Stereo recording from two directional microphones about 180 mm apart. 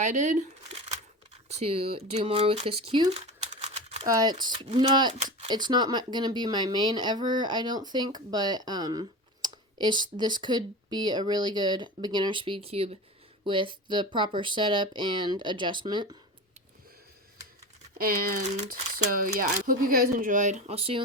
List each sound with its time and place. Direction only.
0.0 s a sound: 45° right (ahead or behind)
1.5 s speech: 35° right (ahead or behind)
4.0 s speech: 20° right (ahead or behind)
5.1 s speech: 35° right (ahead or behind)
5.5 s speech: 25° right (ahead or behind)
17.9 s speech: 55° right (ahead or behind); by 21.0 s 30° right (ahead or behind)